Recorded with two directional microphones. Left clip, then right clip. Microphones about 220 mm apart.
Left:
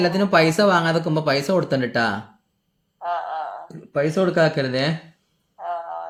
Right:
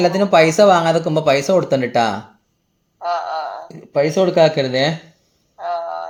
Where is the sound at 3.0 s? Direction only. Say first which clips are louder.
Right 4 dB; 30° right (ahead or behind).